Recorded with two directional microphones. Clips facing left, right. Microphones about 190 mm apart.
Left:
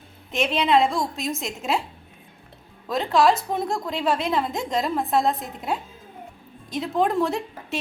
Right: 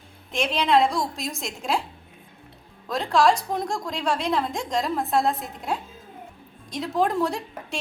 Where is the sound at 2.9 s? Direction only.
Centre (ahead or behind).